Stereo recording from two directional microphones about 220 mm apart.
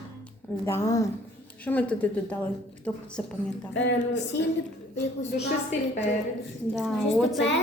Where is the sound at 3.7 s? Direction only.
55° left (ahead or behind).